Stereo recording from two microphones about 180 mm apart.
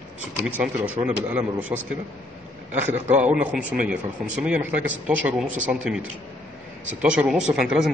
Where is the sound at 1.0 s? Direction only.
30° right (ahead or behind).